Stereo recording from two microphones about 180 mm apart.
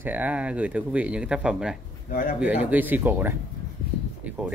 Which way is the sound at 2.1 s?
50° left (ahead or behind).